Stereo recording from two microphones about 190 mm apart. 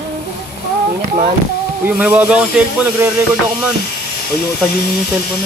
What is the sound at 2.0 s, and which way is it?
Speech, 5° right (ahead or behind).